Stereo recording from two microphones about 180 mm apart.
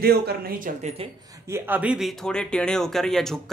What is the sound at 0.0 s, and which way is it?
Speech, 60° right (ahead or behind).